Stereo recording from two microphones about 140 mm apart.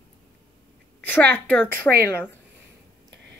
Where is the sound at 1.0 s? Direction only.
10° left (ahead or behind).